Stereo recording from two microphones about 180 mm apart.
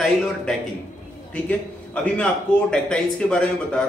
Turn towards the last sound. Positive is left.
turn(degrees=5)  # may be behind; listen again after turning